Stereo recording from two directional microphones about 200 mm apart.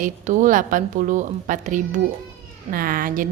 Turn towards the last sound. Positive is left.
turn(degrees=-45)  # may be behind; listen again after turning